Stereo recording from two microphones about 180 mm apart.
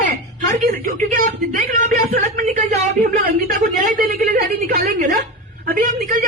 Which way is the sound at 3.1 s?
50° right (ahead or behind).